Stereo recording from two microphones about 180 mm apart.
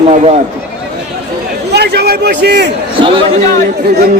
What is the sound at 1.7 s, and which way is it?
A man's voice, 65° right (ahead or behind).